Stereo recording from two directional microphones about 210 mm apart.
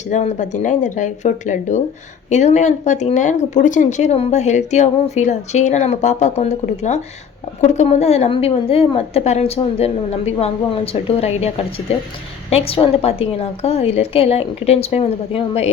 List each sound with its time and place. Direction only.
0.1 s a woman's voice: 35° left (ahead or behind)